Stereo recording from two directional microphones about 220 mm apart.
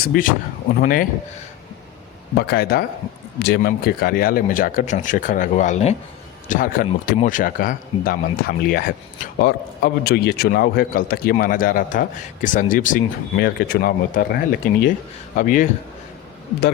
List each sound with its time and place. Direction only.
0.1 s speech: 40° left (ahead or behind)
2.4 s speech: 45° left (ahead or behind)